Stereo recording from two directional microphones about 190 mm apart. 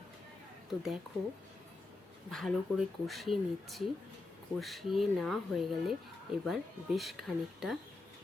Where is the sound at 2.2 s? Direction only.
Centre (ahead or behind).